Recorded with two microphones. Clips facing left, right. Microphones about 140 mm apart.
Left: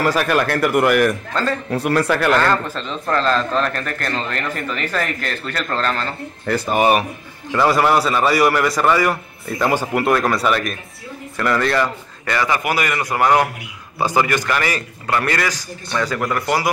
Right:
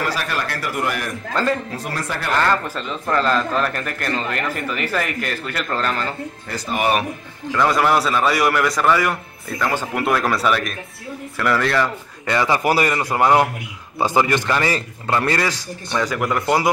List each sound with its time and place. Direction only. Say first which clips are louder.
0.1 s a man's voice: left 7 dB; 55° left (ahead or behind); by 2.3 s 70° left (ahead or behind)
2.7 s speech: even; 10° right (ahead or behind)
6.4 s a man's voice: left 8 dB; 60° left (ahead or behind)
7.5 s a man's voice: left 2 dB; 5° left (ahead or behind)
9.6 s speech: left 4 dB; 15° left (ahead or behind)
9.9 s a man's voice: even; centre (ahead or behind)
12.3 s a man's voice: right 2 dB; 25° right (ahead or behind)
15.9 s speech: even; 15° right (ahead or behind)